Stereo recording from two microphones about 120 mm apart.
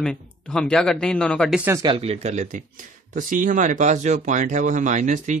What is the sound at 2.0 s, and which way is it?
Speech, 60° right (ahead or behind).